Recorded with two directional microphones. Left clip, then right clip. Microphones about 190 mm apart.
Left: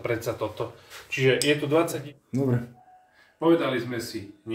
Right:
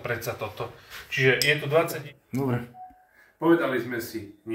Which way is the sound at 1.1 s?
55° left (ahead or behind).